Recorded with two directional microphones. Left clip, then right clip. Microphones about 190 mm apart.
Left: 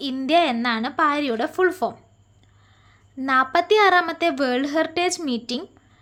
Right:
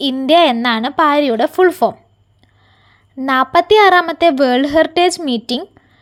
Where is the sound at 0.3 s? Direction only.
30° right (ahead or behind).